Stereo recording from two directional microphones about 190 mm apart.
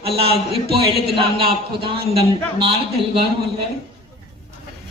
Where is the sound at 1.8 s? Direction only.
30° right (ahead or behind).